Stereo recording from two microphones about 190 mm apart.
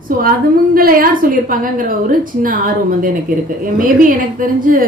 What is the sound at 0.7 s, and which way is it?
Speech, 50° right (ahead or behind).